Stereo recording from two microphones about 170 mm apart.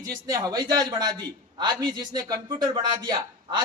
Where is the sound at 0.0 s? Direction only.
20° right (ahead or behind).